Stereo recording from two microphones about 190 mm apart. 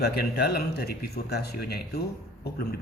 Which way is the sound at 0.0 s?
55° left (ahead or behind).